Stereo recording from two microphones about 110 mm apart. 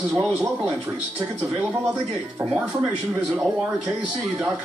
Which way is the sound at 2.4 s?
20° right (ahead or behind).